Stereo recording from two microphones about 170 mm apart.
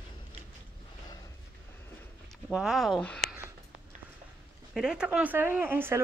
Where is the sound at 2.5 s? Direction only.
Centre (ahead or behind).